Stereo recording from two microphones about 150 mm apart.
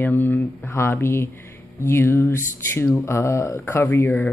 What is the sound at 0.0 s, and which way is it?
Speech, 15° left (ahead or behind).